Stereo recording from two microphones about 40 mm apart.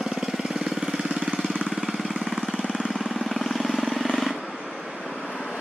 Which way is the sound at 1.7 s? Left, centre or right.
Centre.